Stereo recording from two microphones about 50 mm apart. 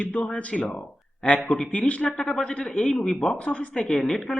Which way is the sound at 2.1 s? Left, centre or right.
Centre.